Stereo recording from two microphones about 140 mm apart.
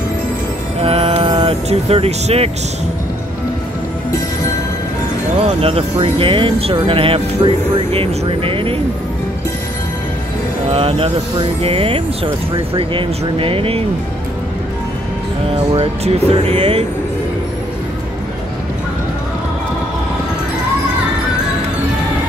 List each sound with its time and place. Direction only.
0.8 s music: 40° right (ahead or behind)
5.6 s speech: 45° right (ahead or behind)
10.7 s speech: 40° right (ahead or behind)
15.7 s speech: 45° right (ahead or behind)